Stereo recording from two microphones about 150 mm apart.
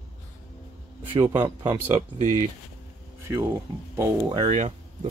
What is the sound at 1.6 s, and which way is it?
Speech, 25° right (ahead or behind).